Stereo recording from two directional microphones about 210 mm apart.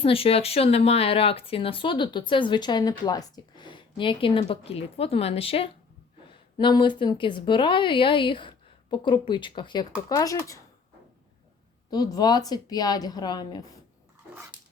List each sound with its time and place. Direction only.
0.0 s speech: 25° left (ahead or behind)
11.9 s speech: 20° left (ahead or behind)